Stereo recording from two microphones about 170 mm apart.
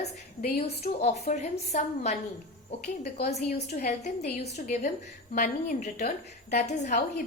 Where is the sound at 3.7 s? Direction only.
70° left (ahead or behind).